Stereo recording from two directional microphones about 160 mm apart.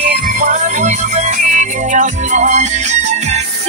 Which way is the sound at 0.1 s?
50° right (ahead or behind).